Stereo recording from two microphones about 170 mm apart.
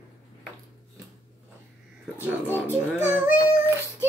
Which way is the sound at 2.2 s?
10° right (ahead or behind).